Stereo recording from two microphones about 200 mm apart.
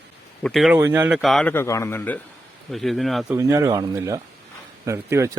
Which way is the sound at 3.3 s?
15° right (ahead or behind).